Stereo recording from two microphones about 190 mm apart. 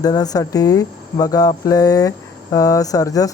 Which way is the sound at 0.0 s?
20° left (ahead or behind).